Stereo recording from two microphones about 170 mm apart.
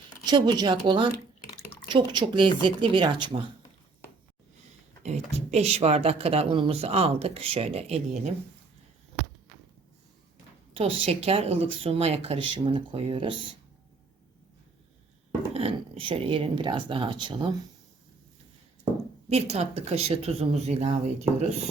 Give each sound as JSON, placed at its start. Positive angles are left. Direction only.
{"t": 0.3, "sound": "speech", "side_deg": -25}
{"t": 5.0, "sound": "speech", "side_deg": -40}
{"t": 10.8, "sound": "speech", "side_deg": -35}
{"t": 15.5, "sound": "speech", "side_deg": -30}
{"t": 19.3, "sound": "speech", "side_deg": -40}